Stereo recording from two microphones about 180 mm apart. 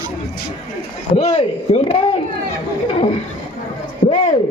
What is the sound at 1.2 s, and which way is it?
Speech, 35° left (ahead or behind).